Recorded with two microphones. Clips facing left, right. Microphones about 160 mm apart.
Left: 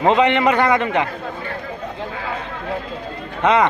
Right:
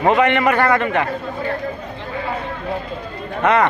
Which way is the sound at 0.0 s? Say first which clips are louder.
Even; 20° left (ahead or behind).